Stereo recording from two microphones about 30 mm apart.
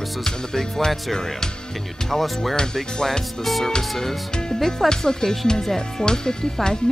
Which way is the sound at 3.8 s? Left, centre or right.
Centre.